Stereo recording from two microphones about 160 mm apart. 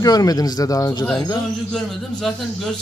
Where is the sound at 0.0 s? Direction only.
25° left (ahead or behind).